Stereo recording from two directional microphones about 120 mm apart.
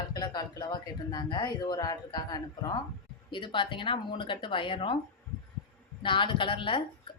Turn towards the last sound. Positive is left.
turn(degrees=45)  # may be behind; listen again after turning